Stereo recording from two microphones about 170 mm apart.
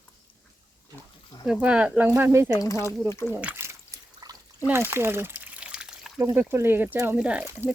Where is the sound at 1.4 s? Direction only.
5° right (ahead or behind).